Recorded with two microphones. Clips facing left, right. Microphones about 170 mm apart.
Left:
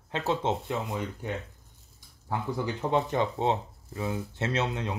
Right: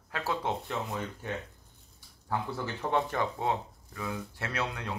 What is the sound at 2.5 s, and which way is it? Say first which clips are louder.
Speech: left 5 dB; 15° left (ahead or behind).